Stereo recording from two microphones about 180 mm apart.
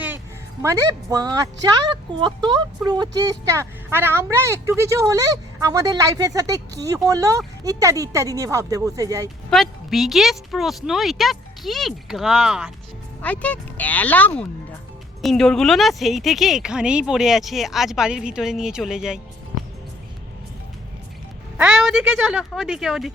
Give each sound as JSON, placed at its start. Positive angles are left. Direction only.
{"t": 0.6, "sound": "speech", "side_deg": -20}
{"t": 9.5, "sound": "speech", "side_deg": 0}
{"t": 13.2, "sound": "speech", "side_deg": 10}
{"t": 21.6, "sound": "speech", "side_deg": -5}